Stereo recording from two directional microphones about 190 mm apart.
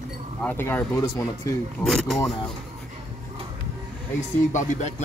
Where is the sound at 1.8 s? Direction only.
Centre (ahead or behind).